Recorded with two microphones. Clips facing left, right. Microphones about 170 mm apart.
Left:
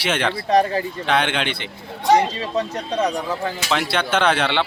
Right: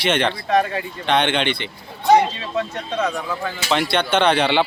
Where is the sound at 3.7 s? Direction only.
Centre (ahead or behind).